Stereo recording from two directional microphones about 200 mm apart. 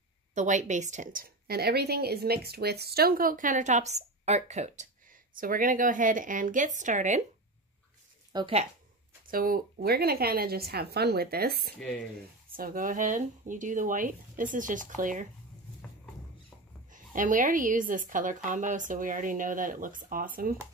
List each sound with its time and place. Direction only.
0.3 s a woman's voice: 35° right (ahead or behind)
8.3 s speech: 25° right (ahead or behind)
9.3 s a woman's voice: 45° right (ahead or behind)
16.9 s a woman's voice: 40° right (ahead or behind)